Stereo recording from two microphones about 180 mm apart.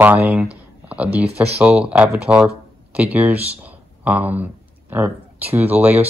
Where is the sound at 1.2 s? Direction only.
35° right (ahead or behind).